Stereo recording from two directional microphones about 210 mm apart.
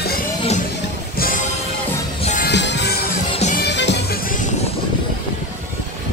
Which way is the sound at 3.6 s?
55° left (ahead or behind).